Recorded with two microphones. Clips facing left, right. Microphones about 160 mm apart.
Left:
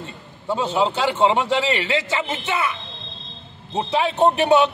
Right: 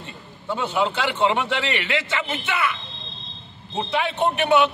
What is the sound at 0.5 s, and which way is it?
A man's voice, 30° left (ahead or behind).